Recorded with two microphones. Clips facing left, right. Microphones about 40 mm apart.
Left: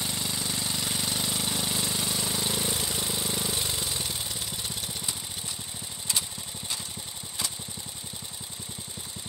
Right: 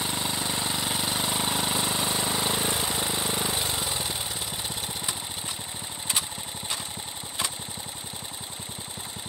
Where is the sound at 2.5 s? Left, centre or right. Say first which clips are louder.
Right 3 dB; right.